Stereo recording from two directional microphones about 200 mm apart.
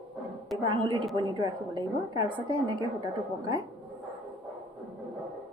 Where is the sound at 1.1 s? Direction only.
25° right (ahead or behind).